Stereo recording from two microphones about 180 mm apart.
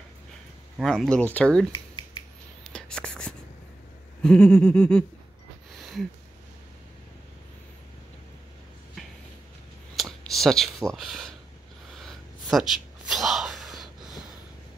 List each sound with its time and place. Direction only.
0.7 s speech: centre (ahead or behind)
1.7 s finger snapping: 25° left (ahead or behind)
2.7 s whispering: 5° left (ahead or behind)
4.2 s speech: 5° left (ahead or behind)
5.8 s a sound: centre (ahead or behind)
9.9 s a sound: centre (ahead or behind)
10.9 s speech: centre (ahead or behind)
12.0 s gasp: centre (ahead or behind)